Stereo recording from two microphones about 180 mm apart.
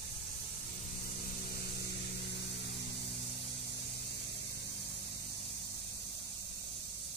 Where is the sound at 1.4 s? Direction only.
60° left (ahead or behind).